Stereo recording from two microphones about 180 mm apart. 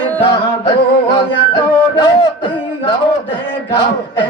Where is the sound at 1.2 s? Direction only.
25° left (ahead or behind).